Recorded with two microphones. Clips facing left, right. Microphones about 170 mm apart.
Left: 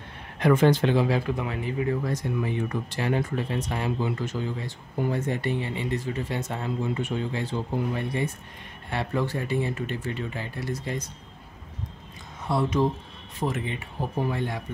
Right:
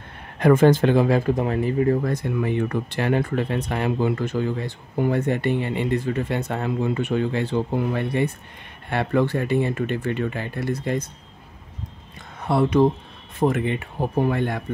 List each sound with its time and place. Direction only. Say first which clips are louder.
0.4 s speech: right 5 dB; 50° right (ahead or behind)
2.1 s speech: right 5 dB; 60° right (ahead or behind)
12.4 s speech: right 6 dB; 60° right (ahead or behind)